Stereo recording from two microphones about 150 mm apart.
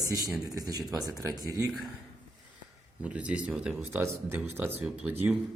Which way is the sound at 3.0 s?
10° right (ahead or behind).